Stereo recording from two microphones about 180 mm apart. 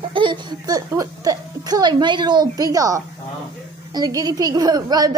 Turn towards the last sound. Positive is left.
turn(degrees=-20)  # may be behind; listen again after turning